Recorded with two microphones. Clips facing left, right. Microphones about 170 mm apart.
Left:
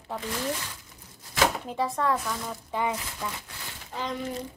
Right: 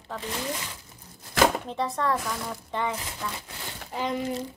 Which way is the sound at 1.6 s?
5° left (ahead or behind).